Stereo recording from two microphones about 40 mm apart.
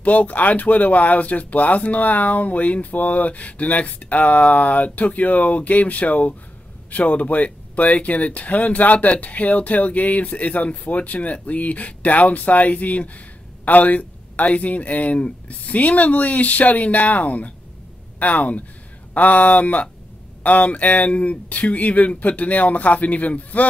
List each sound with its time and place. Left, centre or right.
0.0 s speech: left